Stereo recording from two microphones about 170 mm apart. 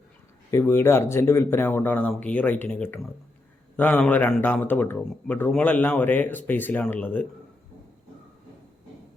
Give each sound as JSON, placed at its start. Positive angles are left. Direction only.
{"t": 0.5, "sound": "a man's voice", "side_deg": 15}